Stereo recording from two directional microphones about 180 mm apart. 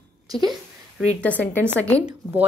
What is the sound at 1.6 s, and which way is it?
Speech, 15° right (ahead or behind).